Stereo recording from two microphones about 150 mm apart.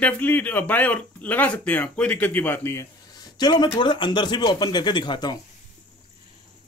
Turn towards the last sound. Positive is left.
turn(degrees=30)  # may be behind; listen again after turning